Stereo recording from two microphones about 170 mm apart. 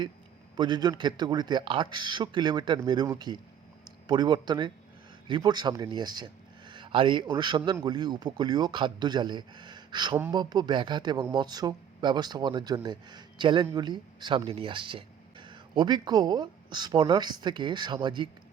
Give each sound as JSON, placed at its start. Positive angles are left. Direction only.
{"t": 0.5, "sound": "speech", "side_deg": -25}